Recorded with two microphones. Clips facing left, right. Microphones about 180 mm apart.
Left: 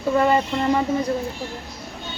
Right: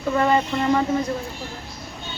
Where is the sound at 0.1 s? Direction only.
5° left (ahead or behind).